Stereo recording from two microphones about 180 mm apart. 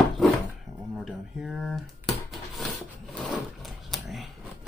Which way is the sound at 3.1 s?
Centre (ahead or behind).